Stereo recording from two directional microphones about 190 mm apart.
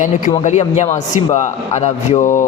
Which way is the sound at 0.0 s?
40° left (ahead or behind).